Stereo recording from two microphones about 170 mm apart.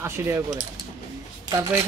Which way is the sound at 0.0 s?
15° right (ahead or behind).